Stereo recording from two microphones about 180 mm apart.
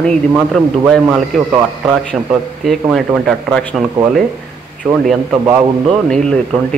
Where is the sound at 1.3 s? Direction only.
5° left (ahead or behind).